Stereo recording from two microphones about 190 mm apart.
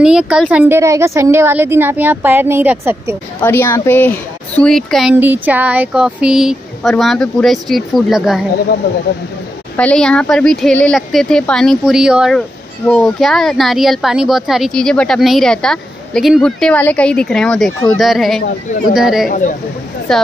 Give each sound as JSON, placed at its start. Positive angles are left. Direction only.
{"t": 0.0, "sound": "a woman's voice", "side_deg": -5}
{"t": 3.3, "sound": "a woman's voice", "side_deg": 10}
{"t": 5.2, "sound": "speech", "side_deg": -10}
{"t": 9.8, "sound": "speech", "side_deg": 5}
{"t": 19.2, "sound": "speech", "side_deg": 45}
{"t": 20.1, "sound": "speech", "side_deg": 5}